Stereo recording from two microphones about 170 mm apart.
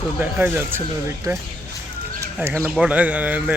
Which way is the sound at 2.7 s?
5° right (ahead or behind).